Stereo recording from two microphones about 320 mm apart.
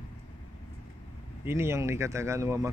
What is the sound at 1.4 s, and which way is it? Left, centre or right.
Speech, centre.